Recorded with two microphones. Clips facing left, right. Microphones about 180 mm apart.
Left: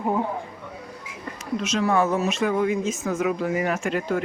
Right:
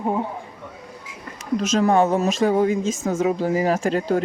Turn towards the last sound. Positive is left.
turn(degrees=-35)  # may be behind; listen again after turning